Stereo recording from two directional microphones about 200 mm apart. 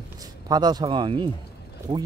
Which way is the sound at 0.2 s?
20° right (ahead or behind).